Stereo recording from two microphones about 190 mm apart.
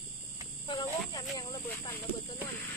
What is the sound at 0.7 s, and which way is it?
Speech, 20° left (ahead or behind).